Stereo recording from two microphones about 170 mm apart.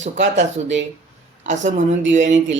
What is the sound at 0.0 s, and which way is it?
A woman's voice, 45° right (ahead or behind).